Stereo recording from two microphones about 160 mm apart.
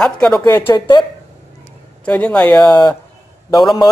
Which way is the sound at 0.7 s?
25° left (ahead or behind).